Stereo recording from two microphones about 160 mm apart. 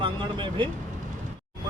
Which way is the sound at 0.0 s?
30° right (ahead or behind).